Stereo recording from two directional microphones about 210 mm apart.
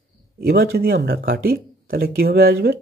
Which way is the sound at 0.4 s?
45° right (ahead or behind).